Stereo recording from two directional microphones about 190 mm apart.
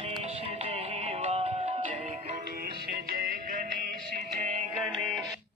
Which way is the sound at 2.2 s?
50° right (ahead or behind).